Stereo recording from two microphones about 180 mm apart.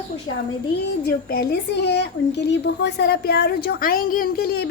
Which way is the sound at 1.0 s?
60° left (ahead or behind).